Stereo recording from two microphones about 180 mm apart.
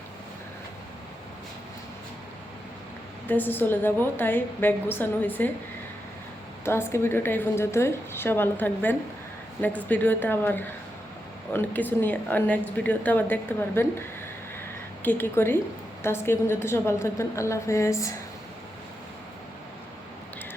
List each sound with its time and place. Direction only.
3.2 s a woman's voice: 10° left (ahead or behind)
6.7 s a woman's voice: 15° left (ahead or behind)
15.0 s a woman's voice: 10° left (ahead or behind)